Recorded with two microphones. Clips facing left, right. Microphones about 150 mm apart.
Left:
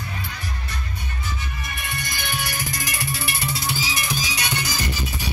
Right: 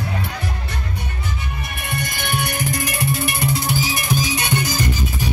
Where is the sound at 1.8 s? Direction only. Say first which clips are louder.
Right 6 dB; 60° right (ahead or behind).